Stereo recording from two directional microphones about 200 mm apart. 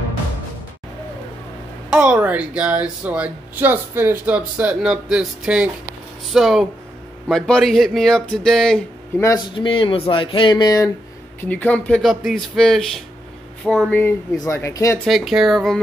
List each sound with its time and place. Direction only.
1.9 s speech: 5° right (ahead or behind)
9.2 s speech: 15° left (ahead or behind)
9.7 s speech: 25° left (ahead or behind)
11.4 s speech: 5° left (ahead or behind)
15.0 s speech: centre (ahead or behind)